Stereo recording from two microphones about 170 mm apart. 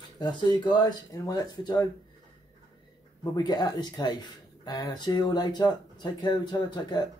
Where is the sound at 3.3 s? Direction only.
25° left (ahead or behind).